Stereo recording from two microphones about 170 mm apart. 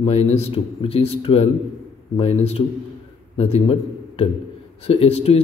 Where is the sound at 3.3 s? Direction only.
35° left (ahead or behind).